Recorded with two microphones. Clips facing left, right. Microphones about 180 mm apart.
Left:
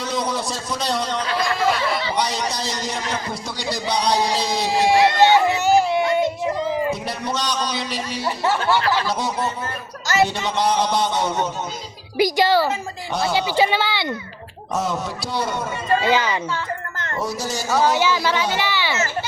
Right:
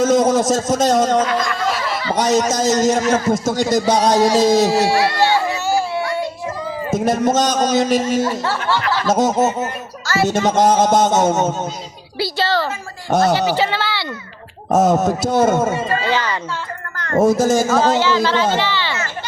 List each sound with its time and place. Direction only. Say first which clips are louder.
0.0 s a man's voice: right 11 dB; 45° right (ahead or behind)
4.9 s music: left 1 dB; 20° left (ahead or behind)
6.9 s a man's voice: right 10 dB; 45° right (ahead or behind)
12.1 s a woman's voice: left 3 dB; 15° left (ahead or behind)
13.1 s a man's voice: right 8 dB; 45° right (ahead or behind)
13.6 s a woman's voice: left 1 dB; 15° left (ahead or behind)
14.7 s a man's voice: right 10 dB; 45° right (ahead or behind)
16.0 s a woman's voice: even; 15° left (ahead or behind)
17.1 s a man's voice: right 13 dB; 50° right (ahead or behind)
18.0 s a woman's voice: right 4 dB; 10° left (ahead or behind)